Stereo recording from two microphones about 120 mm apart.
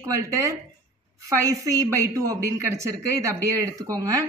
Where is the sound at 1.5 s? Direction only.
25° right (ahead or behind).